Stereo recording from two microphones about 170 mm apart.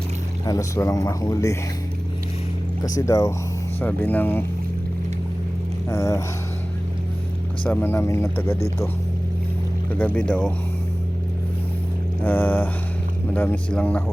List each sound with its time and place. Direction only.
0.4 s speech: 20° left (ahead or behind)
2.8 s speech: 20° left (ahead or behind)
5.9 s speech: 15° left (ahead or behind)
7.6 s speech: 10° left (ahead or behind)
10.0 s speech: 10° left (ahead or behind)
12.2 s speech: 10° left (ahead or behind)